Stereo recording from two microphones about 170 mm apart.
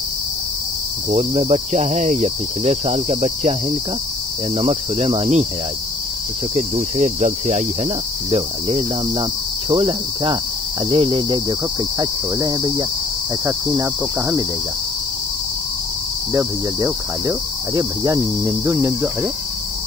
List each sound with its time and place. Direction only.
1.1 s cricket: 40° right (ahead or behind)
4.6 s cricket: 40° right (ahead or behind)
6.5 s cricket: 45° right (ahead or behind); by 14.4 s 25° right (ahead or behind)
16.3 s cricket: 20° right (ahead or behind)